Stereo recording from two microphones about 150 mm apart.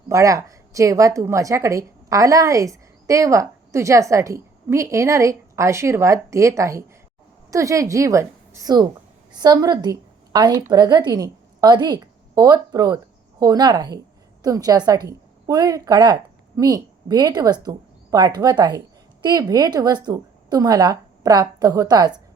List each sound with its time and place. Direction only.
0.1 s a woman's voice: 20° right (ahead or behind)